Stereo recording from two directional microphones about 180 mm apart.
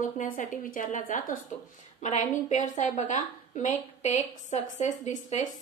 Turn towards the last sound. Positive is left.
turn(degrees=45)  # may be behind; listen again after turning